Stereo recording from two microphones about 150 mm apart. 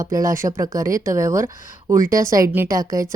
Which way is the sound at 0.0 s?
20° right (ahead or behind).